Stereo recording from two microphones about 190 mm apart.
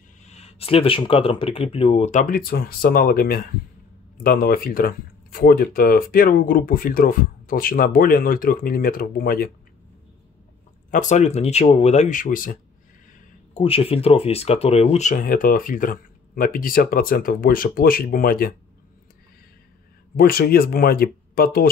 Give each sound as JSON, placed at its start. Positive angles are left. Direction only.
{"t": 0.2, "sound": "speech", "side_deg": 35}
{"t": 10.9, "sound": "speech", "side_deg": 40}
{"t": 13.6, "sound": "speech", "side_deg": 30}
{"t": 20.2, "sound": "speech", "side_deg": 55}